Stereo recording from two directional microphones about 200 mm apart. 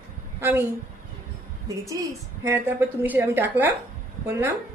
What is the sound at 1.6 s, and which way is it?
A woman's voice, 15° right (ahead or behind).